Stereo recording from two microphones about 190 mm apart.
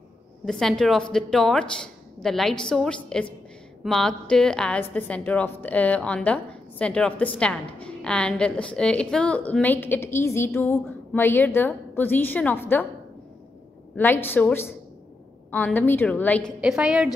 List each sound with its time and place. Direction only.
0.5 s a woman's voice: centre (ahead or behind)
13.9 s a woman's voice: 10° left (ahead or behind)
16.6 s a woman's voice: 5° right (ahead or behind)